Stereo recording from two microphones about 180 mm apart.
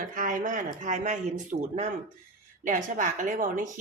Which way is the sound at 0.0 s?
50° right (ahead or behind).